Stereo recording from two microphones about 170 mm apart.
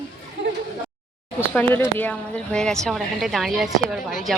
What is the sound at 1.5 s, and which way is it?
A woman's voice, 10° left (ahead or behind).